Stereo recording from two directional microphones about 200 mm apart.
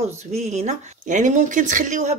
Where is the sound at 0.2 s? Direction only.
35° right (ahead or behind).